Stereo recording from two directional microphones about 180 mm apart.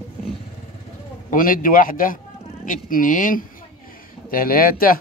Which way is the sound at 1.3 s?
50° left (ahead or behind).